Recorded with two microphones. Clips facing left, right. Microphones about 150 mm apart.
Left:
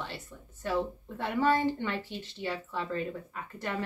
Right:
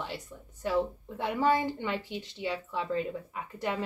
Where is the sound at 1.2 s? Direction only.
15° right (ahead or behind).